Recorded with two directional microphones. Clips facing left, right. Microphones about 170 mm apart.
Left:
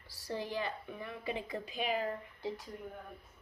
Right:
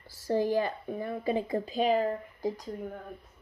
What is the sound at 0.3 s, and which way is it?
Speech, 45° right (ahead or behind).